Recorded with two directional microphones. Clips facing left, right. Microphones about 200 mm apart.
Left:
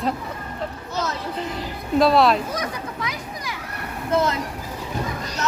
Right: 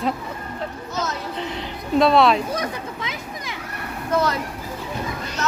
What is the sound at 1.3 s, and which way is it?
Music, centre (ahead or behind).